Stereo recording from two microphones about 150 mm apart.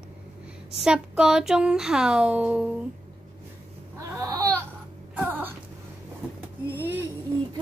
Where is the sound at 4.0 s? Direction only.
20° right (ahead or behind).